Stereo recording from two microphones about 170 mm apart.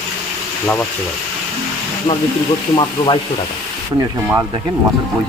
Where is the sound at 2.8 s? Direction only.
30° left (ahead or behind).